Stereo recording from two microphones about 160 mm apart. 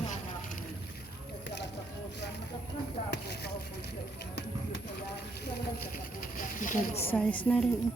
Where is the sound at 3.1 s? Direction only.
90° left.